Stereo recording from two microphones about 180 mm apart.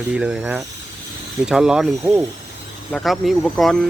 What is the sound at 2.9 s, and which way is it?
Speech, centre (ahead or behind).